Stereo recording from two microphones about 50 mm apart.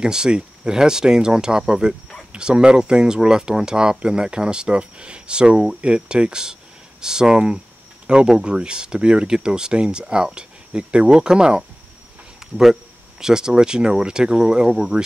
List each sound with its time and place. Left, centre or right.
0.0 s speech: centre
12.4 s a sound: centre
13.2 s speech: centre